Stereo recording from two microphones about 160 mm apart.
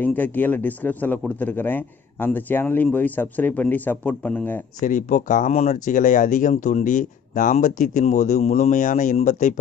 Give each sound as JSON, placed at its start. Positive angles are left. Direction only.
{"t": 0.0, "sound": "a man's voice", "side_deg": 10}
{"t": 4.8, "sound": "speech", "side_deg": 55}